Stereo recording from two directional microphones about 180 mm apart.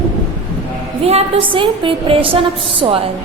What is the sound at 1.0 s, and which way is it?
A woman's voice, 30° right (ahead or behind).